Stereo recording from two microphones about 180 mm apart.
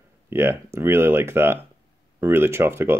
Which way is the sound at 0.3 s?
15° right (ahead or behind).